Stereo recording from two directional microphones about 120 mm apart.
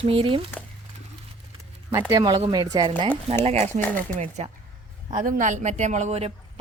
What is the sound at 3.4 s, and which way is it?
Speech, 60° right (ahead or behind).